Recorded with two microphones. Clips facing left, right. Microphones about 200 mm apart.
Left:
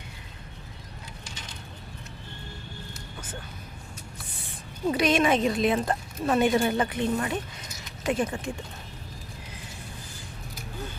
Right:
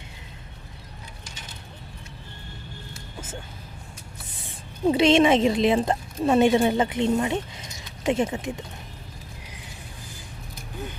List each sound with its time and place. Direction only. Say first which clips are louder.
4.9 s a woman's voice: right 5 dB; 25° right (ahead or behind)